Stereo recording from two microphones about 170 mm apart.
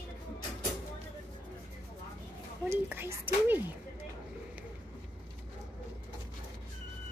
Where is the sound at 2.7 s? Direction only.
15° right (ahead or behind).